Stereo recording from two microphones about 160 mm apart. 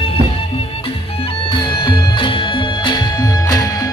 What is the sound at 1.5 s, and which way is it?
Music, 30° left (ahead or behind).